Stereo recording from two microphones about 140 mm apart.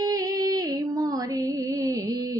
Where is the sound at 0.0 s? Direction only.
25° right (ahead or behind).